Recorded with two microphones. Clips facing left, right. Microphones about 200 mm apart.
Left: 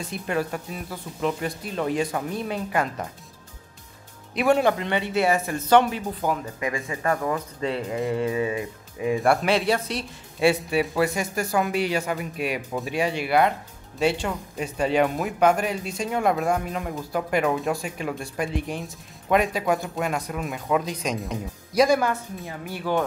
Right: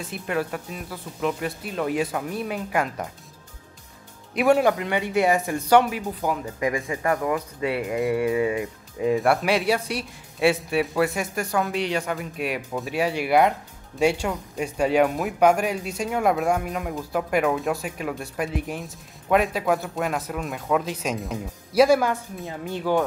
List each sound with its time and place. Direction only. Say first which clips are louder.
0.0 s speech: even; 5° right (ahead or behind)
4.4 s speech: right 1 dB; 10° right (ahead or behind)
9.2 s speech: even; 5° right (ahead or behind)